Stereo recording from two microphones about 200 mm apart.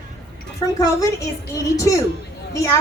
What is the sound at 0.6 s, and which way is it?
A woman's voice, 20° left (ahead or behind).